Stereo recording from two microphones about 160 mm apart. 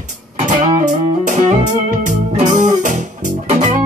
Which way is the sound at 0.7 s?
50° right (ahead or behind).